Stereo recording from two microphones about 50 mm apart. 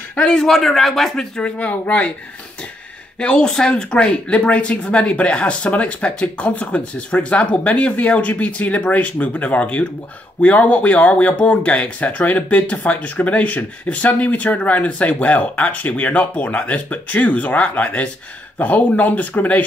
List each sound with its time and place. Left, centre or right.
0.1 s a man's voice: centre
0.5 s a man's voice: centre
1.3 s speech: left
3.2 s speech: centre